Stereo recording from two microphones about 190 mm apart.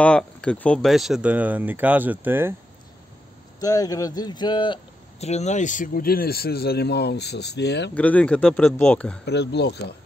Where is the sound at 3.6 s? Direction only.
20° left (ahead or behind); by 7.9 s 60° left (ahead or behind).